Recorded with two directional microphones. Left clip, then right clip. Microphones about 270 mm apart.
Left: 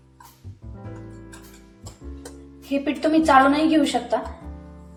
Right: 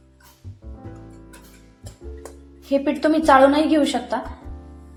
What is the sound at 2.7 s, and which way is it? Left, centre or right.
A woman's voice, centre.